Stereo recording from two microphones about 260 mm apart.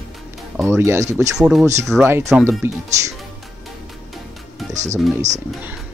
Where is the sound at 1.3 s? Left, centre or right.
Centre.